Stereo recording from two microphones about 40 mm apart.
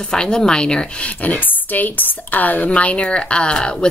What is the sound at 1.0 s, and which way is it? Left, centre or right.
A woman's voice, left.